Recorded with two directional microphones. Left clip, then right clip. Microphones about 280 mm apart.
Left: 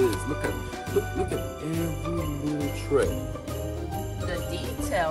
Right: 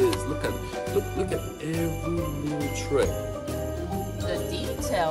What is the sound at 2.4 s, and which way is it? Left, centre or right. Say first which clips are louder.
Speech: even; centre.